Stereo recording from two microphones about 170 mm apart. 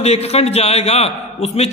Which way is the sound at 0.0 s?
40° left (ahead or behind).